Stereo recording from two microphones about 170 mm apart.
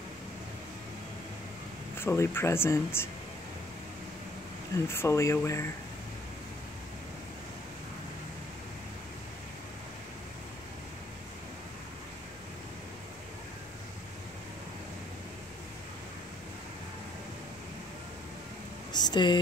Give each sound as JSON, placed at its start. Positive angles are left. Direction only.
{"t": 2.0, "sound": "speech", "side_deg": 15}
{"t": 4.8, "sound": "speech", "side_deg": 15}
{"t": 18.9, "sound": "a sound", "side_deg": 25}